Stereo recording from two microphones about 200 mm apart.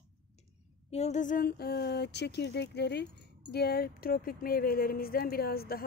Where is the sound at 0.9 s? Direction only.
35° left (ahead or behind); by 5.8 s 50° left (ahead or behind).